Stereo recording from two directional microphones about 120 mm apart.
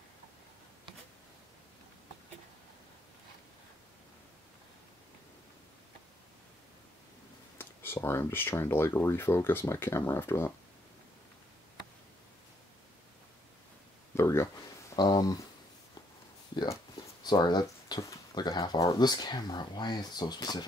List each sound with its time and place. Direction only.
7.5 s speech: 20° left (ahead or behind)
14.1 s speech: 20° left (ahead or behind)
15.0 s speech: 35° left (ahead or behind)
17.2 s speech: 35° left (ahead or behind)